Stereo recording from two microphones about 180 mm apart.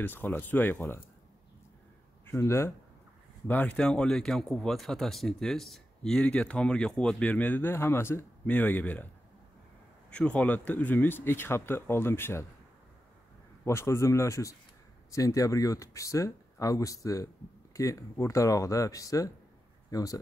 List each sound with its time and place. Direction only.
0.0 s speech: 10° left (ahead or behind)
2.3 s speech: 15° left (ahead or behind)
10.1 s speech: 5° left (ahead or behind)
13.7 s speech: 15° left (ahead or behind)